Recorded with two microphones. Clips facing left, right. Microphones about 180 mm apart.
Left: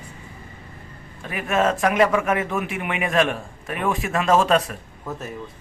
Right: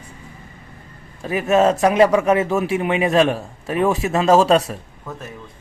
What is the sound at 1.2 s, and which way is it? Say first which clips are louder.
A man's voice: right 6 dB; 35° right (ahead or behind).